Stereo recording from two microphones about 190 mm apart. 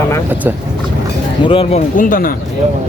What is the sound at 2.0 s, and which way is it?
Speech, 45° left (ahead or behind).